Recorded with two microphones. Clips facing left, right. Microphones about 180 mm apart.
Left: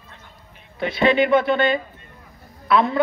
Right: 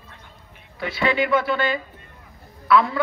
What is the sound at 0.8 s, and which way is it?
A woman's voice, 25° left (ahead or behind).